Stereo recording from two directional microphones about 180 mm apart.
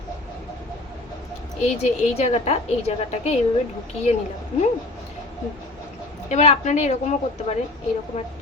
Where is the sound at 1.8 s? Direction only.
35° left (ahead or behind).